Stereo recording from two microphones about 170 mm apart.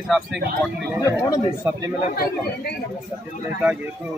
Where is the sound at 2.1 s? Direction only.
65° left (ahead or behind).